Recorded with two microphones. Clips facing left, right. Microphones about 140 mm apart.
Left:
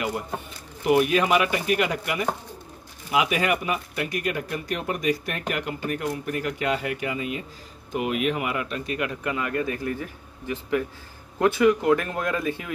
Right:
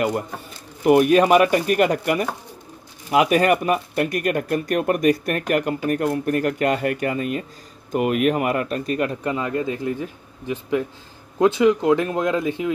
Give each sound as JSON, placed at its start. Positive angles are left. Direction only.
{"t": 0.8, "sound": "speech", "side_deg": -45}
{"t": 9.3, "sound": "a man's voice", "side_deg": -25}